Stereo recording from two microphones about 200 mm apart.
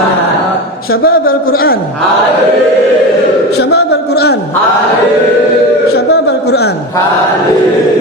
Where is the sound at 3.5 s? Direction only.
55° left (ahead or behind).